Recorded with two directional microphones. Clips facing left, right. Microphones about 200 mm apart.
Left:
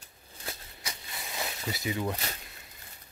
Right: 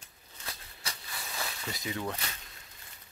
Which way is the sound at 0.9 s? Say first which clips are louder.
Left 1 dB; 20° left (ahead or behind).